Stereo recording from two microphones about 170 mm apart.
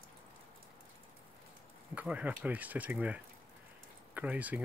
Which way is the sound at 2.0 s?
10° right (ahead or behind).